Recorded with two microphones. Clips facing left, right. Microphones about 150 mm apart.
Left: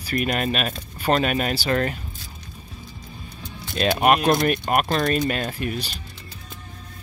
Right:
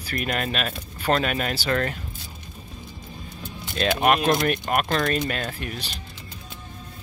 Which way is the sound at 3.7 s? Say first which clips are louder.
Left 2 dB; 20° left (ahead or behind).